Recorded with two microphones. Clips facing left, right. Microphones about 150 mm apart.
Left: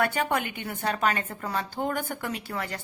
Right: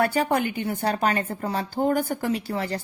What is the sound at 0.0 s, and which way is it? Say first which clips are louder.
A woman's voice: right 4 dB; 35° right (ahead or behind).